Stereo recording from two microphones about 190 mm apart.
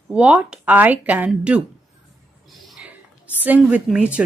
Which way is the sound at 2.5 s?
Centre (ahead or behind).